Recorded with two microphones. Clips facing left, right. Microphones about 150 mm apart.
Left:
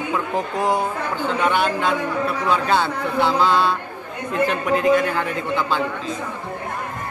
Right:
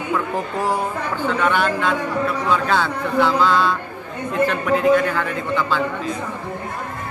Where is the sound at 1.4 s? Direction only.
20° left (ahead or behind).